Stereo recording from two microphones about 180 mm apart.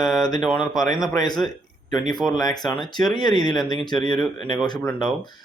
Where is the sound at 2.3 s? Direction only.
20° left (ahead or behind).